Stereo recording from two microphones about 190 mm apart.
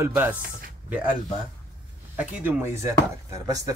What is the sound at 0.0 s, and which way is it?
Speech, 10° right (ahead or behind).